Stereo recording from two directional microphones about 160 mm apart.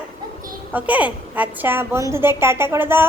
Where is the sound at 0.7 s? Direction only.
10° right (ahead or behind).